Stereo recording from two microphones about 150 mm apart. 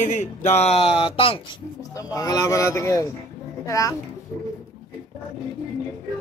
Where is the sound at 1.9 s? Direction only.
25° left (ahead or behind).